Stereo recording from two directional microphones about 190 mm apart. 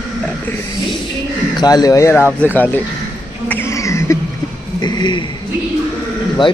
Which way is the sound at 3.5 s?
15° left (ahead or behind).